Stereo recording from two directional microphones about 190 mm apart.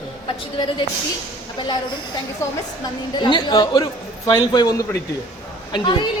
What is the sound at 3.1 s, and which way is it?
A man's voice, 25° left (ahead or behind).